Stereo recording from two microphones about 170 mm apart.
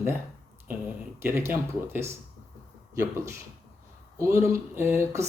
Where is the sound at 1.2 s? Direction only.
15° right (ahead or behind).